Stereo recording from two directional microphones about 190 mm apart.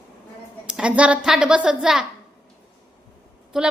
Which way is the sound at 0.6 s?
5° right (ahead or behind).